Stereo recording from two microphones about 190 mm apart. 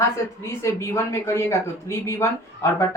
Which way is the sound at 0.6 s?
15° left (ahead or behind).